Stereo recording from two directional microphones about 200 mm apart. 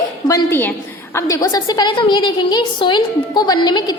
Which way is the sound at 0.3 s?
15° left (ahead or behind).